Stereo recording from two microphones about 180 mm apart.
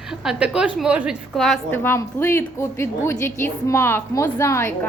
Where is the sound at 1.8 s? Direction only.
15° left (ahead or behind).